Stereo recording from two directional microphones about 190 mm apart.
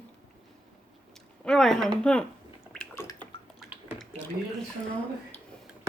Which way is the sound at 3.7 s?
5° right (ahead or behind).